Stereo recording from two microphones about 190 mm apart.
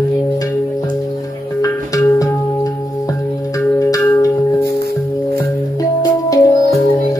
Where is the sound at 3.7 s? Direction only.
20° left (ahead or behind).